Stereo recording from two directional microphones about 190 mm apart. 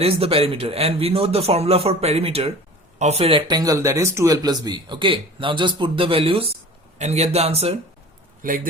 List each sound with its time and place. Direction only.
0.0 s a man's voice: 30° right (ahead or behind)
8.4 s speech: 45° right (ahead or behind)